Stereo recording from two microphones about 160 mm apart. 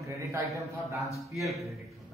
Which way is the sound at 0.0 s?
20° right (ahead or behind).